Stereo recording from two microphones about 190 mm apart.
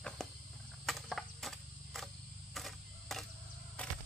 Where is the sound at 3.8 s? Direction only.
5° left (ahead or behind).